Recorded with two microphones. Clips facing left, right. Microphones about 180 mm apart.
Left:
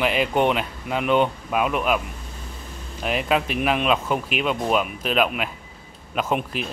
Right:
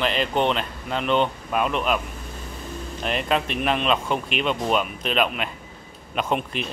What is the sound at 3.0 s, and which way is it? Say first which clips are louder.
Speech: left 2 dB; 5° left (ahead or behind).